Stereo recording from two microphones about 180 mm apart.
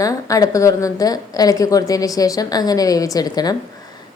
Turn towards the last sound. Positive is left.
turn(degrees=20)  # may be behind; listen again after turning